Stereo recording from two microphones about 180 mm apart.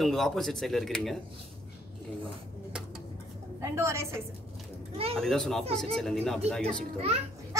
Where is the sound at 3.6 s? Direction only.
15° right (ahead or behind).